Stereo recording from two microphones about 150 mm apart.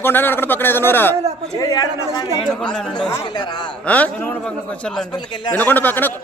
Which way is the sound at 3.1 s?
25° left (ahead or behind).